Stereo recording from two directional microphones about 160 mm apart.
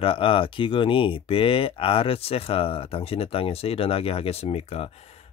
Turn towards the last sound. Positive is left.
turn(degrees=40)  # may be behind; listen again after turning